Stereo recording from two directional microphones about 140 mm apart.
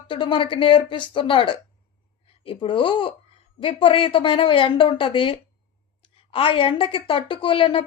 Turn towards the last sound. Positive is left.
turn(degrees=40)  # may be behind; listen again after turning